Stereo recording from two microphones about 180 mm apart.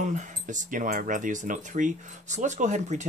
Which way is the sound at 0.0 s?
45° right (ahead or behind).